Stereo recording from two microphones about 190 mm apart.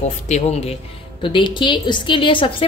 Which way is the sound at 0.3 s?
35° left (ahead or behind).